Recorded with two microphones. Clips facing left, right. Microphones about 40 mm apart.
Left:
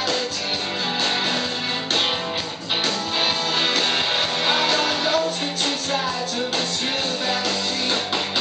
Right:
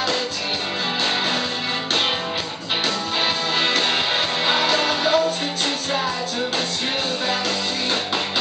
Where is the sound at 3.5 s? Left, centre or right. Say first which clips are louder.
Right 2 dB; centre.